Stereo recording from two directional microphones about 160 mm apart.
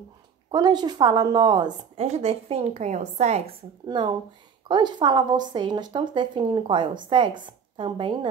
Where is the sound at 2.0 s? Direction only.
40° right (ahead or behind).